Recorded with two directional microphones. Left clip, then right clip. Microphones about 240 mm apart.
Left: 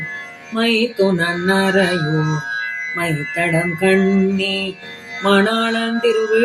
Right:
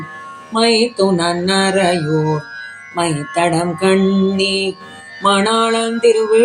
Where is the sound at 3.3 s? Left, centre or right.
Centre.